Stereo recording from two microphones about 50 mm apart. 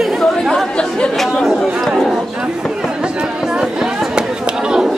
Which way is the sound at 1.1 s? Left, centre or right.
Centre.